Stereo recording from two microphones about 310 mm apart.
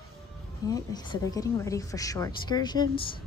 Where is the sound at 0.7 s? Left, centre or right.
Centre.